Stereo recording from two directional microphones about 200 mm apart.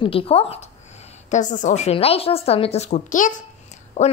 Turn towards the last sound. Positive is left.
turn(degrees=35)  # may be behind; listen again after turning